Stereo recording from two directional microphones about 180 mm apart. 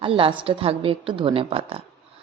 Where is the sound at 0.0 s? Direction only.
30° right (ahead or behind).